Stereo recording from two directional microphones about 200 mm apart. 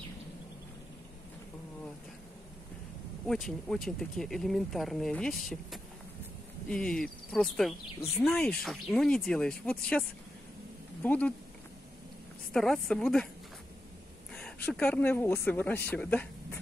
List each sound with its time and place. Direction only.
3.3 s speech: centre (ahead or behind)
12.5 s speech: centre (ahead or behind)
14.3 s speech: 5° left (ahead or behind)